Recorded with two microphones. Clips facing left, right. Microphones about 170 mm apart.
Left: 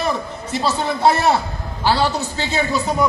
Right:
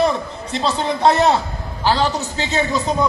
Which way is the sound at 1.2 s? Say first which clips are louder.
Right 1 dB; 10° left (ahead or behind).